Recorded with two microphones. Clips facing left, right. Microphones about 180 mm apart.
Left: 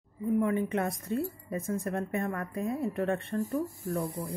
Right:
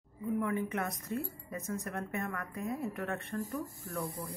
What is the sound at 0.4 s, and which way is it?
A woman's voice, 25° left (ahead or behind).